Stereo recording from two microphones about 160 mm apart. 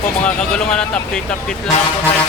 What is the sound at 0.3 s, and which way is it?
Speech, 5° left (ahead or behind).